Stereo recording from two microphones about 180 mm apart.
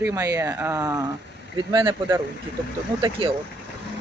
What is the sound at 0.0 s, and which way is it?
Speech, 15° right (ahead or behind).